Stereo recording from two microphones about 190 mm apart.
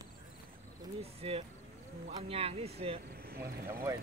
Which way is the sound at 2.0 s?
30° right (ahead or behind).